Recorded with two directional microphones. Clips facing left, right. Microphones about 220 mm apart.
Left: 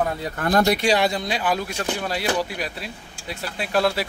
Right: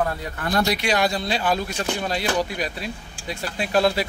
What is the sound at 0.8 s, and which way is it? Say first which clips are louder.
Speech: left 2 dB; 25° left (ahead or behind).